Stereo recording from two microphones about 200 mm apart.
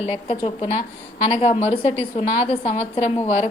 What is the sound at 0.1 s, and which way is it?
A woman's voice, 30° left (ahead or behind).